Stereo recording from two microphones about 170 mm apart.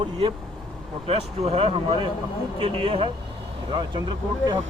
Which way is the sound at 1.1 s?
35° right (ahead or behind).